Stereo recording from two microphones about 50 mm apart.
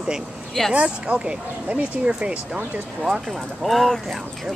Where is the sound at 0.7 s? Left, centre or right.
Right.